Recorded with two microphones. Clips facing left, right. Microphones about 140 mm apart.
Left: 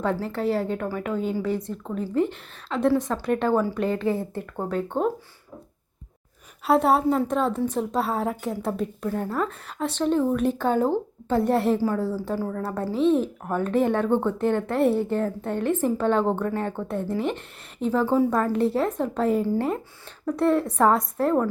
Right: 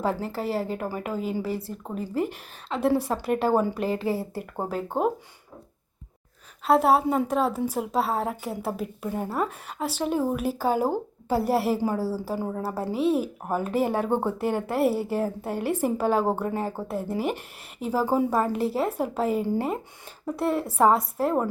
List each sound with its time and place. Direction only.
0.0 s a woman's voice: 5° right (ahead or behind)
6.7 s a woman's voice: centre (ahead or behind)
12.4 s a woman's voice: 20° right (ahead or behind)
12.9 s a woman's voice: 5° right (ahead or behind)